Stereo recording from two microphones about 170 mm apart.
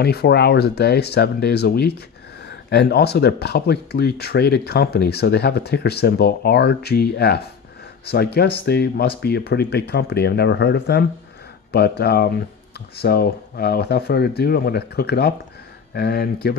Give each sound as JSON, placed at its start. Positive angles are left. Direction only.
{"t": 0.0, "sound": "speech", "side_deg": 70}